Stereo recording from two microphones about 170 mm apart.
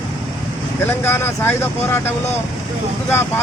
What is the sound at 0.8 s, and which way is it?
Speech, 15° left (ahead or behind).